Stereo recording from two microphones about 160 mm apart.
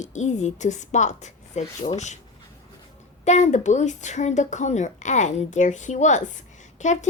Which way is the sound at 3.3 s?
45° left (ahead or behind).